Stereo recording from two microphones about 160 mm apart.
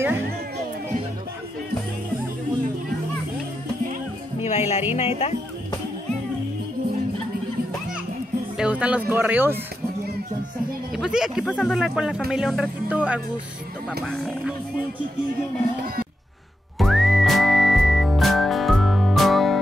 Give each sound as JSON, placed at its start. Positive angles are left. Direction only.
{"t": 4.5, "sound": "music", "side_deg": 40}
{"t": 4.9, "sound": "speech", "side_deg": 40}
{"t": 8.5, "sound": "speech", "side_deg": -10}
{"t": 11.0, "sound": "speech", "side_deg": -5}
{"t": 16.7, "sound": "whistling", "side_deg": 0}